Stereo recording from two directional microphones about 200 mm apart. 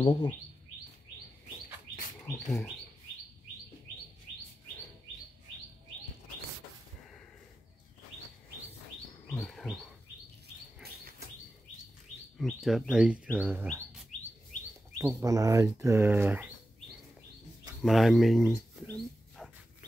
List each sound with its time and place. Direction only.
0.0 s speech: 25° left (ahead or behind)
2.2 s speech: 15° left (ahead or behind)
9.3 s chirp: 5° left (ahead or behind)
12.4 s speech: centre (ahead or behind)
14.1 s chirp: 35° left (ahead or behind)
15.0 s speech: 15° right (ahead or behind)
17.8 s speech: centre (ahead or behind)